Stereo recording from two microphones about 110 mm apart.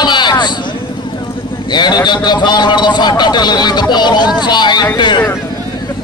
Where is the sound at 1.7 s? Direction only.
40° left (ahead or behind).